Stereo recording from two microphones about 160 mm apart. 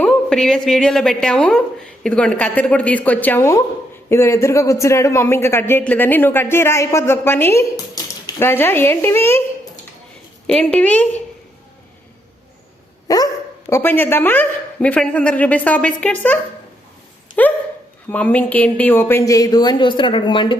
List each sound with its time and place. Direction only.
0.0 s a woman's voice: 5° left (ahead or behind)
10.4 s a man's voice: 5° left (ahead or behind)
13.1 s a man's voice: 20° left (ahead or behind)